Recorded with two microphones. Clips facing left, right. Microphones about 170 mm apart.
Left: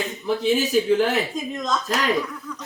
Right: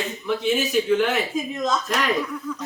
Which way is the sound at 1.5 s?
5° right (ahead or behind).